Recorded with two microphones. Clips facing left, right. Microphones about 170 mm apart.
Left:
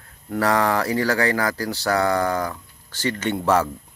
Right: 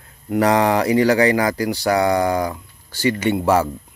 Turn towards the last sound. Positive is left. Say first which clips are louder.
# right 3 dB
turn(degrees=-10)  # may be behind; listen again after turning